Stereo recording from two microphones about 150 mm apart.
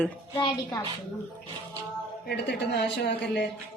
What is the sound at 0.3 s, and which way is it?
Speech, 30° left (ahead or behind).